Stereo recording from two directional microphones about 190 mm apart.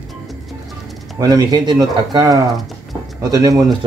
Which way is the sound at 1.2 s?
20° right (ahead or behind).